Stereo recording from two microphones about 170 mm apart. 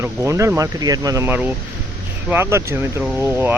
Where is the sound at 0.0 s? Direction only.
15° right (ahead or behind).